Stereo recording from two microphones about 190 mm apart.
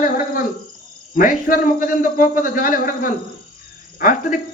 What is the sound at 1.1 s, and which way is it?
Speech, 45° left (ahead or behind).